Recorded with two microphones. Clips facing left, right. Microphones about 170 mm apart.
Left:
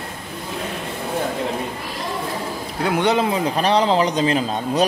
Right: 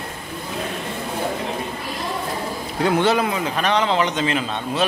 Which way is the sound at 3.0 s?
20° left (ahead or behind).